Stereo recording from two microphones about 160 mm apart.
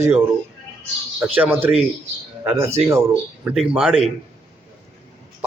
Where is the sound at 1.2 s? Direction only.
15° right (ahead or behind).